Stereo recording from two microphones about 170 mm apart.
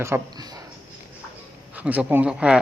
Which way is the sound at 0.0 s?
20° right (ahead or behind).